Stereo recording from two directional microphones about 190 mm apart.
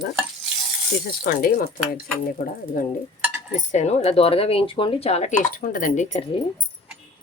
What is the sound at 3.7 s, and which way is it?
Speech, 35° left (ahead or behind).